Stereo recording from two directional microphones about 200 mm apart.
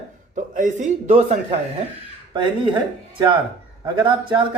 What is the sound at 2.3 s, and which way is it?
Speech, 25° right (ahead or behind).